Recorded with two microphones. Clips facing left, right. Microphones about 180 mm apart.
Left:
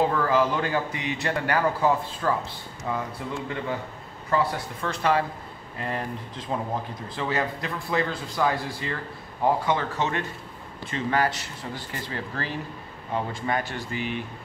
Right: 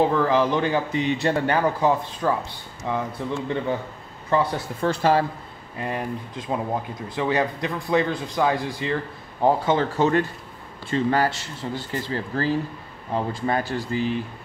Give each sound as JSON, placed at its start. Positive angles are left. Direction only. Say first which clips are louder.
{"t": 0.2, "sound": "a man's voice", "louder": "right 3 dB", "side_deg": -20}
{"t": 4.3, "sound": "speech", "louder": "right 3 dB", "side_deg": -30}
{"t": 5.8, "sound": "speech", "louder": "right 3 dB", "side_deg": -15}